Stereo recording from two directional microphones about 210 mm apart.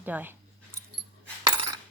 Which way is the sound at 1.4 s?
20° right (ahead or behind).